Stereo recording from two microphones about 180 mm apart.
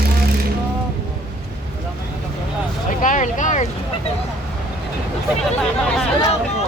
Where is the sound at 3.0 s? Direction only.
45° left (ahead or behind).